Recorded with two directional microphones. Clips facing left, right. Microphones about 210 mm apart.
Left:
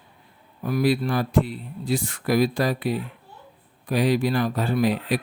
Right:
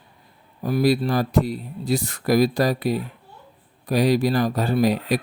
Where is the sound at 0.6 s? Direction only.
35° right (ahead or behind).